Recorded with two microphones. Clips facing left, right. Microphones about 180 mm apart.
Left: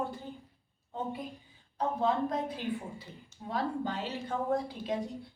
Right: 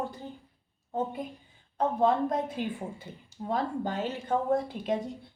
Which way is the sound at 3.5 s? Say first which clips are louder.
Right 3 dB; 50° right (ahead or behind).